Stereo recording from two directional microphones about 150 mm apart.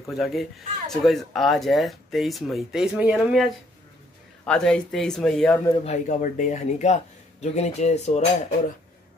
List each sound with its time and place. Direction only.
0.1 s speech: centre (ahead or behind)
5.9 s speech: 55° left (ahead or behind)